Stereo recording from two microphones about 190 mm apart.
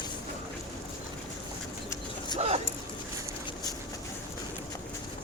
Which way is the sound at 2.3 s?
35° right (ahead or behind).